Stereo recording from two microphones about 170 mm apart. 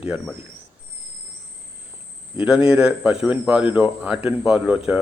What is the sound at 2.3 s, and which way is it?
A man's voice, 5° right (ahead or behind).